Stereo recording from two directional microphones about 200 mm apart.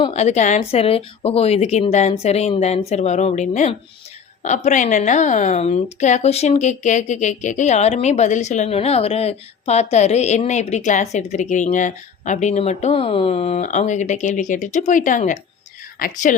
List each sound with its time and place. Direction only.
0.0 s a woman's voice: 35° left (ahead or behind)